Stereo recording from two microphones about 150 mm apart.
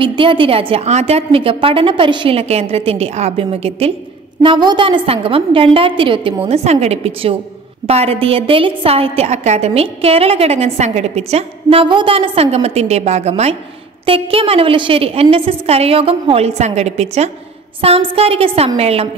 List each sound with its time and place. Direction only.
0.0 s a woman's voice: 35° right (ahead or behind)
4.4 s a woman's voice: 30° right (ahead or behind)